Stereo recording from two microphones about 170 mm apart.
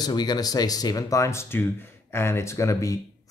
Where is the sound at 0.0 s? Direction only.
25° left (ahead or behind).